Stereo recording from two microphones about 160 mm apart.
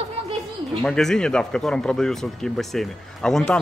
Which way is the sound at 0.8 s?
5° left (ahead or behind).